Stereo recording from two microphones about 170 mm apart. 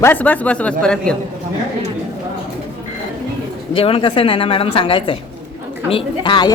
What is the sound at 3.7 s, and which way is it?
A woman's voice, 30° left (ahead or behind).